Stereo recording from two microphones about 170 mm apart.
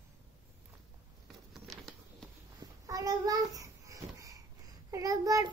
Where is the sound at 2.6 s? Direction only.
20° right (ahead or behind).